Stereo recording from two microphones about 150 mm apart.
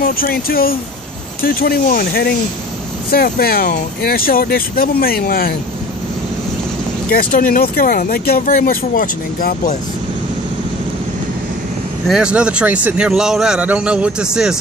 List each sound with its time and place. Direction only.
0.0 s speech: 80° left
7.1 s speech: 75° left (ahead or behind)
12.1 s a man's voice: 5° right (ahead or behind)